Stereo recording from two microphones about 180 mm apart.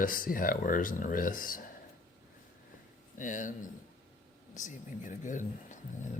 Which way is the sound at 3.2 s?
45° left (ahead or behind).